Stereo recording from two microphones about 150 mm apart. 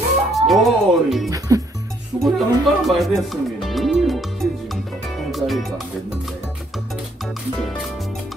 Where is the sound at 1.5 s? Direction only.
20° right (ahead or behind).